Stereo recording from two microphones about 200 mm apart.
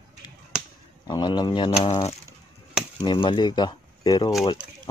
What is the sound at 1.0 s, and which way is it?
Speech, 20° left (ahead or behind).